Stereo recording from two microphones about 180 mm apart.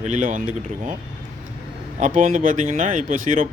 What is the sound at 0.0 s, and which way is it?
Speech, 45° right (ahead or behind).